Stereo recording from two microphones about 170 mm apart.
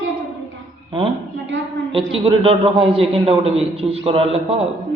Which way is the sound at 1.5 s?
90° right.